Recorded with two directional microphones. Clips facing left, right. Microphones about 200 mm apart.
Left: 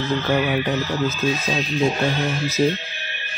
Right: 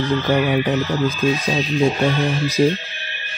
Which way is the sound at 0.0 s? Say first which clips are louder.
Right 3 dB; 15° right (ahead or behind).